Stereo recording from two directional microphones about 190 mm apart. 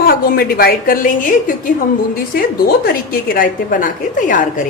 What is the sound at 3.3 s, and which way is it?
Speech, 45° left (ahead or behind).